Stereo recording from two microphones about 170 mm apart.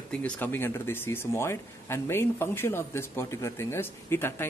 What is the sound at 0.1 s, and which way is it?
Speech, 5° left (ahead or behind).